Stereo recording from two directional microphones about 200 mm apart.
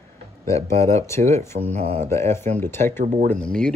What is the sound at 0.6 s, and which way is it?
Speech, 30° right (ahead or behind).